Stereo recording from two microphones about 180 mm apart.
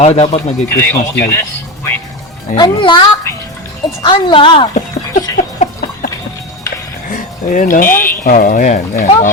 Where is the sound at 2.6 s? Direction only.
25° left (ahead or behind).